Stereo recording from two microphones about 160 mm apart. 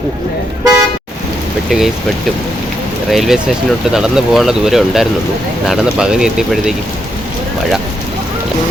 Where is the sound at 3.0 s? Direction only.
Centre (ahead or behind).